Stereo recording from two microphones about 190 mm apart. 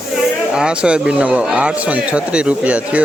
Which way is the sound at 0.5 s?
5° right (ahead or behind).